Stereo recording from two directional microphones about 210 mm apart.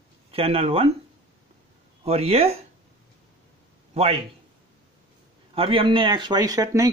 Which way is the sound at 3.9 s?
30° right (ahead or behind).